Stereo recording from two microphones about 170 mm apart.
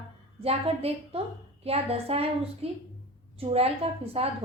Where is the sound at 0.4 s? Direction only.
35° right (ahead or behind).